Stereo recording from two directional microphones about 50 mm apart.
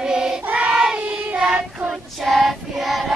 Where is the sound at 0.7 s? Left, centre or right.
Centre.